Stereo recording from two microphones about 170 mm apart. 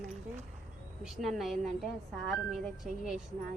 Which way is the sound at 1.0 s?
Centre (ahead or behind).